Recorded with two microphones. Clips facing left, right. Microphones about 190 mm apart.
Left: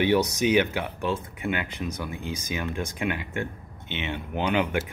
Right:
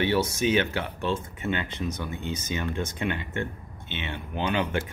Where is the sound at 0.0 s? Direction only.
15° left (ahead or behind).